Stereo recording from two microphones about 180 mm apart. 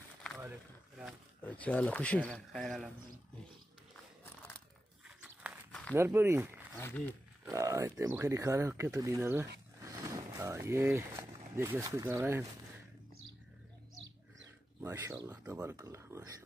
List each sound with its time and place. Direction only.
1.4 s speech: 5° left (ahead or behind)
5.0 s a sound: 5° right (ahead or behind)
5.7 s a sound: 5° left (ahead or behind)
5.9 s speech: 15° right (ahead or behind)
6.8 s speech: 10° left (ahead or behind)
7.4 s speech: 15° right (ahead or behind)
14.8 s speech: 15° right (ahead or behind)